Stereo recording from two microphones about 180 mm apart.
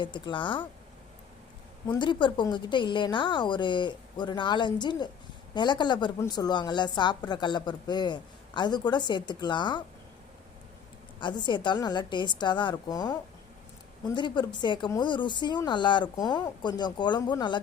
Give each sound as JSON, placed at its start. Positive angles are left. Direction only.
{"t": 0.0, "sound": "a woman's voice", "side_deg": 25}
{"t": 2.0, "sound": "a woman's voice", "side_deg": 25}
{"t": 11.2, "sound": "a woman's voice", "side_deg": 25}